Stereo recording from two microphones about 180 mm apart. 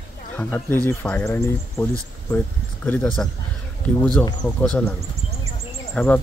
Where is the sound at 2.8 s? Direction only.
10° left (ahead or behind).